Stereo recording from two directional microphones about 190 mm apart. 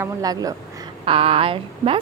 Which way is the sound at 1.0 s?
30° right (ahead or behind).